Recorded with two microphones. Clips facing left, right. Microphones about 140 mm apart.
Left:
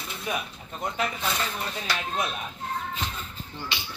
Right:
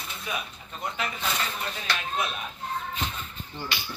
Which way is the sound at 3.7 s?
25° left (ahead or behind).